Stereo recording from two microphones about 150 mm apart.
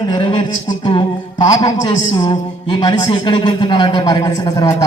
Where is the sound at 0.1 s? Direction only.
35° left (ahead or behind).